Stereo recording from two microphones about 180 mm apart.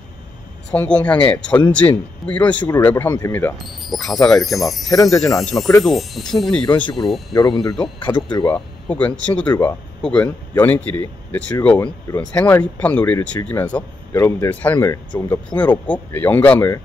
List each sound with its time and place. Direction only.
0.7 s speech: 5° left (ahead or behind)
3.8 s speech: centre (ahead or behind)
4.8 s speech: 20° left (ahead or behind)
5.4 s speech: 5° left (ahead or behind)
7.3 s speech: 20° left (ahead or behind)
8.5 s speech: 5° left (ahead or behind)